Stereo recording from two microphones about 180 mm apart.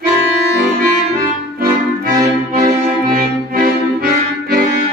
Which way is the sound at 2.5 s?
55° right (ahead or behind).